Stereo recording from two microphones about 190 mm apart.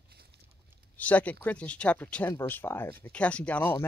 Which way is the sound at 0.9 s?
10° left (ahead or behind).